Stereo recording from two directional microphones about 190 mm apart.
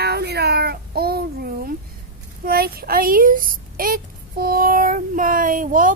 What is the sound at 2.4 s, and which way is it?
A child's voice, 55° right (ahead or behind).